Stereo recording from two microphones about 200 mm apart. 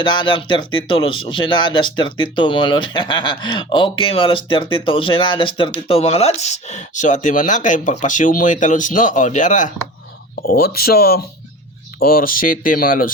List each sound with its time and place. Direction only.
0.0 s speech: 25° left (ahead or behind); by 9.7 s 40° left (ahead or behind)
10.4 s speech: 50° left (ahead or behind)